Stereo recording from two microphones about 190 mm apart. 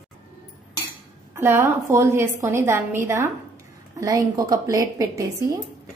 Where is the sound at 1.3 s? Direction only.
15° right (ahead or behind).